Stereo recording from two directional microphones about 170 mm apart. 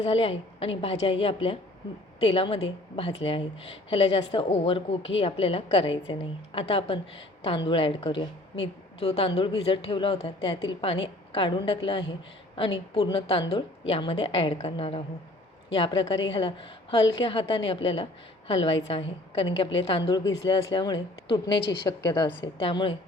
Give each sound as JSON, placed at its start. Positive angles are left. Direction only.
{"t": 0.0, "sound": "a woman's voice", "side_deg": 35}
{"t": 21.6, "sound": "a woman's voice", "side_deg": 85}
{"t": 21.8, "sound": "a woman's voice", "side_deg": 25}